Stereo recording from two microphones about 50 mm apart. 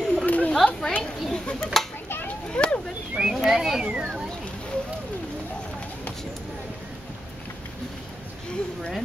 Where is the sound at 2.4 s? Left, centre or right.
Left.